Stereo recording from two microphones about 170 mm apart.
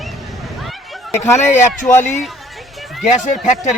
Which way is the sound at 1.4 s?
45° left (ahead or behind).